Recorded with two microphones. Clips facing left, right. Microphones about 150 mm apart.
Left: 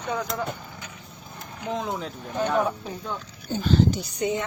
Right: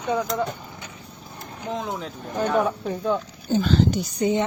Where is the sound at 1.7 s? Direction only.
Centre (ahead or behind).